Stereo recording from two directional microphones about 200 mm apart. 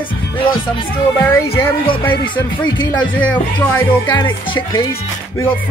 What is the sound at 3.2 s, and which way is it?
Speech, 10° left (ahead or behind).